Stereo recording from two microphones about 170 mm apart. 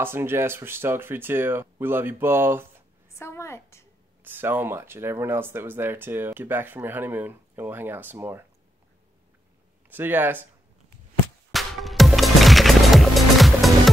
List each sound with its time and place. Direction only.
0.0 s speech: 15° right (ahead or behind)
3.1 s a sound: 15° left (ahead or behind)
4.2 s speech: 10° right (ahead or behind)
9.8 s speech: 10° right (ahead or behind)
11.5 s music: centre (ahead or behind)